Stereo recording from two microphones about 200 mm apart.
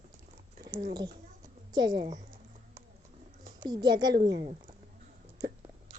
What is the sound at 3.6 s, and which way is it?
Speech, 20° right (ahead or behind).